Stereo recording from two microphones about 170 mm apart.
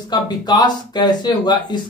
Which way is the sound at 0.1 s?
25° left (ahead or behind).